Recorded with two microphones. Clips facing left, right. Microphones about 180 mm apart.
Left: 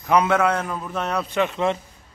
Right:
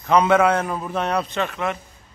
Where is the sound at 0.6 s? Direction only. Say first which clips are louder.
Right 3 dB; 20° right (ahead or behind).